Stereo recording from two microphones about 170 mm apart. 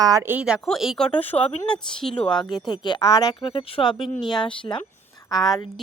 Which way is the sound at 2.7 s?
25° left (ahead or behind).